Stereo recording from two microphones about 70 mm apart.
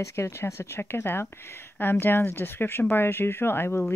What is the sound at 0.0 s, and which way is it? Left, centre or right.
Speech, left.